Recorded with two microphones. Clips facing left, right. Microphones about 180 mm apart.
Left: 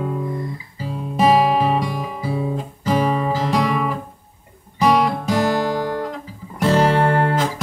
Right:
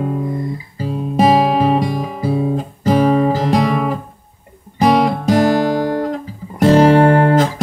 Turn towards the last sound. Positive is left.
turn(degrees=-45)  # may be behind; listen again after turning